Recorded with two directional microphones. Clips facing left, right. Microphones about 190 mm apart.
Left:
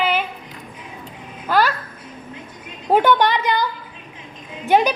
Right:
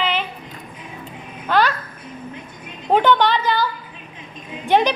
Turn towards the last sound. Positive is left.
turn(degrees=5)  # may be behind; listen again after turning